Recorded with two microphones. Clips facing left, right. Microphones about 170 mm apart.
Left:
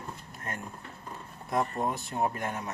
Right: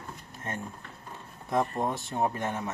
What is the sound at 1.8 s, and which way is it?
Speech, 30° right (ahead or behind).